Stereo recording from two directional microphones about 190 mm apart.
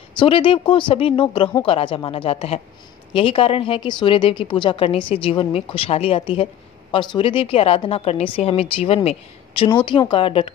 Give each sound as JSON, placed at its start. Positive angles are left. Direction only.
{"t": 0.1, "sound": "a woman's voice", "side_deg": 25}